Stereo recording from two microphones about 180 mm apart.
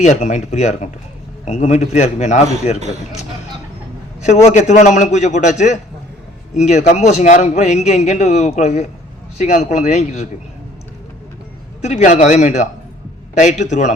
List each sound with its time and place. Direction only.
0.0 s a man's voice: 40° left (ahead or behind)
4.3 s a man's voice: 40° left (ahead or behind)
11.8 s a man's voice: 40° left (ahead or behind)